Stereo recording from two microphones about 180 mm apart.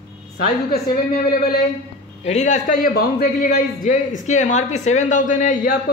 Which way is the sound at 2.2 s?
40° left (ahead or behind).